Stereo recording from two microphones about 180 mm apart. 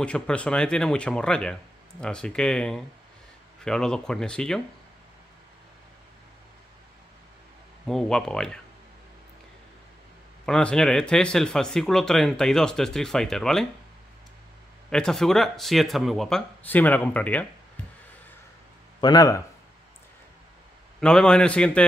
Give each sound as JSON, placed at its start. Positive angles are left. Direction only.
{"t": 0.0, "sound": "speech", "side_deg": 5}
{"t": 7.8, "sound": "speech", "side_deg": 5}
{"t": 10.4, "sound": "speech", "side_deg": 5}
{"t": 14.9, "sound": "speech", "side_deg": 5}
{"t": 18.9, "sound": "a man's voice", "side_deg": 20}
{"t": 21.0, "sound": "speech", "side_deg": 5}